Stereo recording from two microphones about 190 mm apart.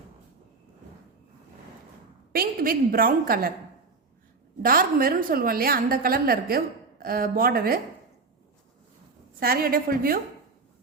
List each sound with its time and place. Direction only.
2.3 s a woman's voice: 50° right (ahead or behind)
4.6 s a woman's voice: 50° right (ahead or behind)
9.4 s a woman's voice: 50° right (ahead or behind)